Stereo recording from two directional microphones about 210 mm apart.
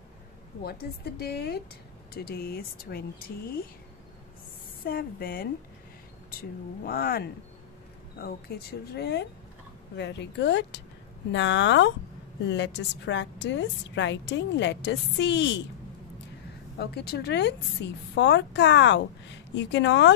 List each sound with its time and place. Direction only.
0.7 s speech: 50° left (ahead or behind)
4.8 s speech: 45° left (ahead or behind)
6.8 s a woman's voice: 45° left (ahead or behind)
16.7 s a woman's voice: 50° left (ahead or behind)